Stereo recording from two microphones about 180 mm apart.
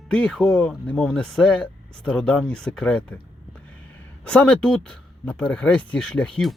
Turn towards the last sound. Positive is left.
turn(degrees=5)  # may be behind; listen again after turning